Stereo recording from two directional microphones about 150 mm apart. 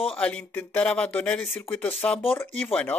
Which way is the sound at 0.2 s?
5° left (ahead or behind).